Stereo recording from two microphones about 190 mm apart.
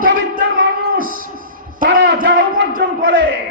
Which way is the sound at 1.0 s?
45° right (ahead or behind).